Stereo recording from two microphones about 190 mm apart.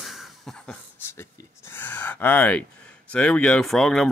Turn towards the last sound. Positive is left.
turn(degrees=0)  # may be behind; listen again after turning